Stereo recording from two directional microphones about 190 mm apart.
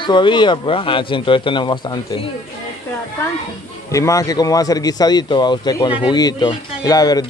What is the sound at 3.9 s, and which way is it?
Speech, 15° left (ahead or behind).